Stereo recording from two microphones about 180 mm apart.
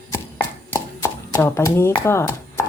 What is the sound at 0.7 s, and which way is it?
Speech, 15° left (ahead or behind).